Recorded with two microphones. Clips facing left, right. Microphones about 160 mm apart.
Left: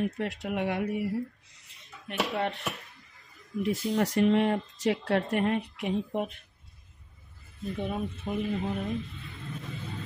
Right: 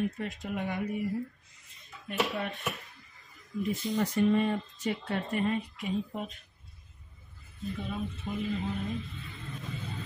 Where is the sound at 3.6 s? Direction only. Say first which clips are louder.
Left 3 dB; 80° left; by 6.3 s 60° left (ahead or behind).